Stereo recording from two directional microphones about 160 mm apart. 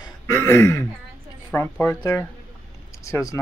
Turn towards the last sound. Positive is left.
turn(degrees=20)  # may be behind; listen again after turning